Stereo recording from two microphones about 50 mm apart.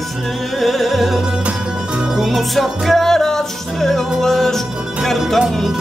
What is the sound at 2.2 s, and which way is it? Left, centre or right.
Music, centre.